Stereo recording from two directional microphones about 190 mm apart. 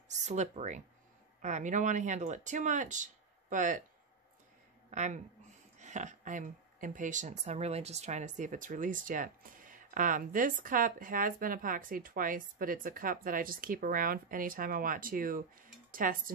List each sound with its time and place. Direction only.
0.2 s speech: 35° right (ahead or behind)
4.9 s speech: 40° right (ahead or behind)